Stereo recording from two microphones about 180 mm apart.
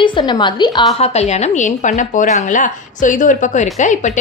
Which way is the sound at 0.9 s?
35° left (ahead or behind).